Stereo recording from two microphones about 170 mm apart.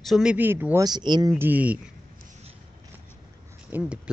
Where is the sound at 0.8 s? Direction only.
25° right (ahead or behind).